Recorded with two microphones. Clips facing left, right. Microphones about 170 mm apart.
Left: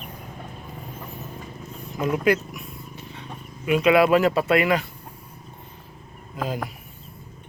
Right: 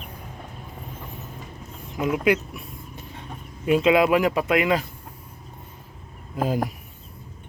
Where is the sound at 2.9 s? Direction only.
45° right (ahead or behind).